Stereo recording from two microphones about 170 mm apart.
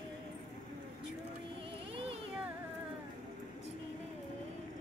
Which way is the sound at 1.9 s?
35° right (ahead or behind).